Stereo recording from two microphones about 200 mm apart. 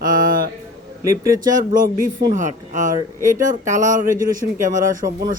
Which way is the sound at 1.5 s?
40° right (ahead or behind).